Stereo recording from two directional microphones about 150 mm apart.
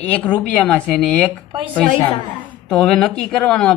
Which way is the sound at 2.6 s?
5° left (ahead or behind).